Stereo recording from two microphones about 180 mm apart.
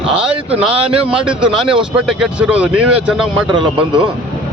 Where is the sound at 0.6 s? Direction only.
5° right (ahead or behind).